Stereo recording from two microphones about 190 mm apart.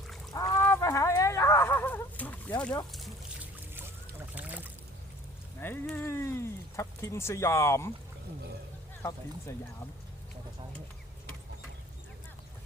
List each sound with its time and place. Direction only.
0.6 s a sound: 15° left (ahead or behind)
4.4 s boat: 10° right (ahead or behind)
5.5 s speech: 10° left (ahead or behind)
9.0 s speech: 15° left (ahead or behind)